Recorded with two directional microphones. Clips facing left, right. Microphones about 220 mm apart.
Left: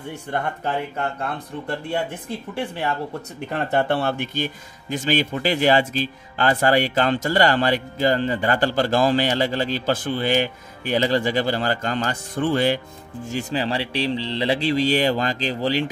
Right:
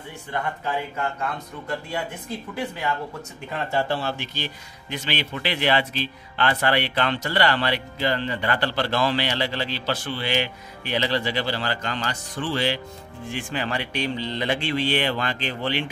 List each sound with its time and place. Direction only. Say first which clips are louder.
2.5 s speech: left 3 dB; 30° left (ahead or behind)
3.5 s speech: left 4 dB; 55° left (ahead or behind); by 15.9 s 35° left (ahead or behind)